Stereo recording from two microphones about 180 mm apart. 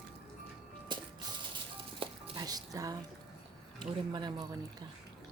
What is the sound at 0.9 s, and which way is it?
Music, 25° right (ahead or behind).